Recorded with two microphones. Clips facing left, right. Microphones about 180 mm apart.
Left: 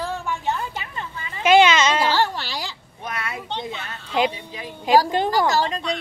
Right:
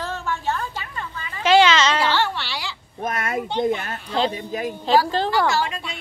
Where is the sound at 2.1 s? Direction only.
40° left (ahead or behind).